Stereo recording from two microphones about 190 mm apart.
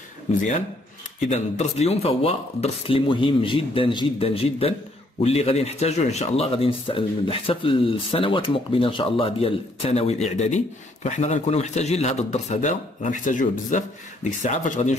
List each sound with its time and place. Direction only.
1.3 s speech: 35° left (ahead or behind)